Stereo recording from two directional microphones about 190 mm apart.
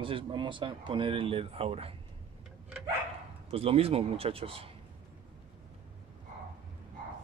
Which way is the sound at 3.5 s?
30° right (ahead or behind).